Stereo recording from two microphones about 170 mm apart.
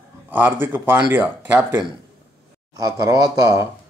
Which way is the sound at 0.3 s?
10° right (ahead or behind).